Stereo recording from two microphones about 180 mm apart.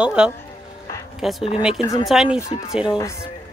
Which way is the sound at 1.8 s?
20° left (ahead or behind).